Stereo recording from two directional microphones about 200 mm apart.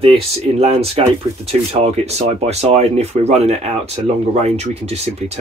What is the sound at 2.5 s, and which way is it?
Speech, 30° right (ahead or behind).